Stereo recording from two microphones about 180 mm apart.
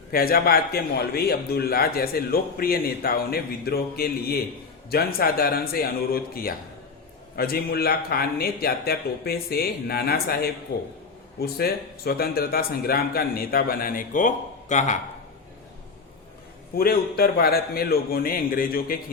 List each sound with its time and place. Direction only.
0.1 s a man's voice: 55° left (ahead or behind)
16.7 s a man's voice: 60° left (ahead or behind)